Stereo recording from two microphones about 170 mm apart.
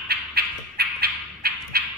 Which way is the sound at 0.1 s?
70° right (ahead or behind).